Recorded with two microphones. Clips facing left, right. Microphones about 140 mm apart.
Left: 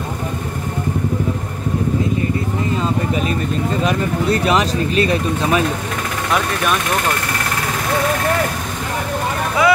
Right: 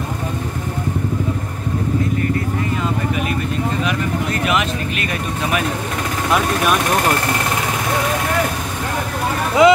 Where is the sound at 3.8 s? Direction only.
35° left (ahead or behind).